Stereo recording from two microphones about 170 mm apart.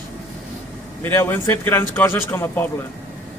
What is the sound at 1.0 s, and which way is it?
A man's voice, 10° left (ahead or behind).